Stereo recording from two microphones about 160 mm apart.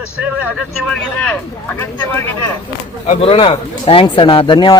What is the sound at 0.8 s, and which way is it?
A man's voice, 5° left (ahead or behind).